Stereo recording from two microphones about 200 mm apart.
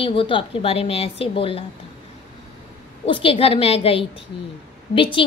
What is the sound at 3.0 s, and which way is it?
A woman's voice, 25° left (ahead or behind).